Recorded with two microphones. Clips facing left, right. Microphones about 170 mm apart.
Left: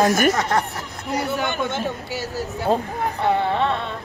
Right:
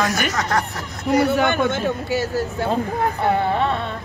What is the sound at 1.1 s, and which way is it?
A man's voice, 70° right (ahead or behind).